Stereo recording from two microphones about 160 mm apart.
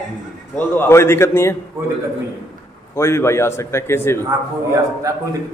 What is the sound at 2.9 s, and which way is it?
A man's voice, 15° left (ahead or behind).